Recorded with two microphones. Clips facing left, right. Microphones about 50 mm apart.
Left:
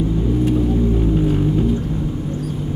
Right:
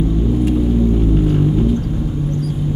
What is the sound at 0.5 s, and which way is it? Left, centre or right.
Vehicle, centre.